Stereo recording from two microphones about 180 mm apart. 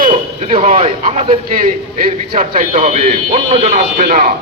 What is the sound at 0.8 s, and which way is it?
Speech, 35° right (ahead or behind).